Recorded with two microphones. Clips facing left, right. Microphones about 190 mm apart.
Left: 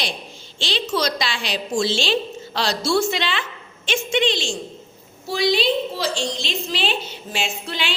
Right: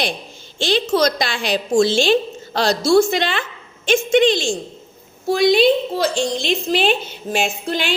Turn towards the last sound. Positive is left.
turn(degrees=-45)  # may be behind; listen again after turning